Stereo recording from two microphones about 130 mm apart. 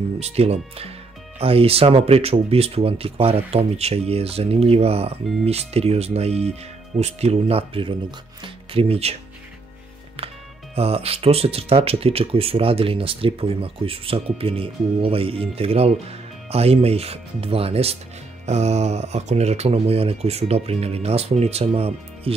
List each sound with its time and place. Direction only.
0.2 s speech: 50° right (ahead or behind)
10.1 s speech: 50° right (ahead or behind)